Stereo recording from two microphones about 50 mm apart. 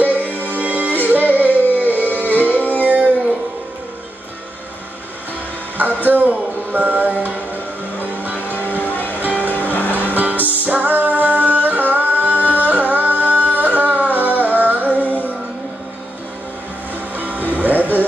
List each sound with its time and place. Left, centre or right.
0.0 s music: right
5.8 s music: right
8.8 s music: left
9.2 s music: right
9.6 s music: left
10.0 s music: right
15.0 s music: left
17.2 s music: right